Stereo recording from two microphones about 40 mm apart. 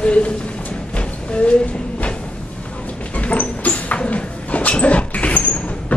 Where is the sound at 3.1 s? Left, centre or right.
Left.